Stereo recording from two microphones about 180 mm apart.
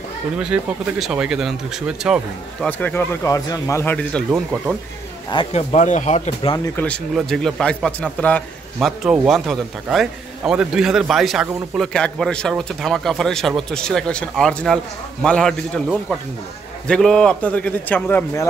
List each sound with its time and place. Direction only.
0.4 s a man's voice: 5° right (ahead or behind)
2.6 s speech: 10° left (ahead or behind)
5.3 s speech: 30° left (ahead or behind)
6.8 s a man's voice: 10° left (ahead or behind)
8.8 s a man's voice: 5° right (ahead or behind)
16.8 s speech: 5° left (ahead or behind)